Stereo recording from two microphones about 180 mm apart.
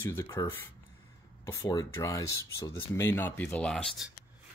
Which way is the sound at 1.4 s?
15° left (ahead or behind).